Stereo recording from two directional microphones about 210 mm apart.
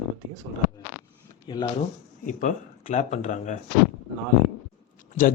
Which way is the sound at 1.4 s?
20° left (ahead or behind).